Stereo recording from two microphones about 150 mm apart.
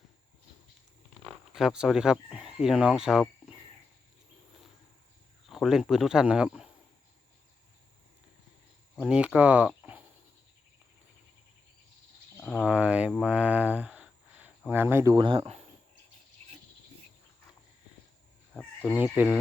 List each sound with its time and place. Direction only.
1.5 s speech: centre (ahead or behind)
5.5 s speech: centre (ahead or behind)
9.0 s speech: 5° right (ahead or behind)
12.4 s a sound: 10° left (ahead or behind)
12.7 s speech: 10° right (ahead or behind)
15.3 s speech: 40° right (ahead or behind)
16.4 s cricket: 45° right (ahead or behind)
18.5 s chicken: 5° left (ahead or behind)
18.9 s speech: 10° right (ahead or behind)